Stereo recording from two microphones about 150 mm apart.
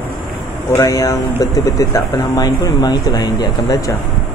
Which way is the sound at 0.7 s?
25° left (ahead or behind).